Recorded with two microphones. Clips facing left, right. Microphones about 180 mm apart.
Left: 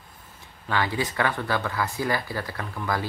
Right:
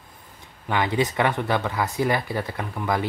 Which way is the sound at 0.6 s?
20° right (ahead or behind).